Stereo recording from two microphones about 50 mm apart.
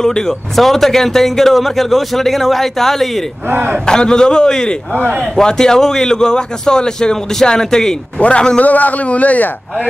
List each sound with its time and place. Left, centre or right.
0.0 s speech: centre
3.4 s a man's voice: right
3.8 s a man's voice: centre
8.2 s a man's voice: left